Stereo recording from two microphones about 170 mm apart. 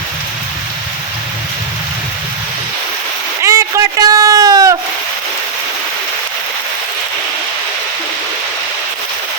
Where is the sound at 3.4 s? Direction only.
20° right (ahead or behind).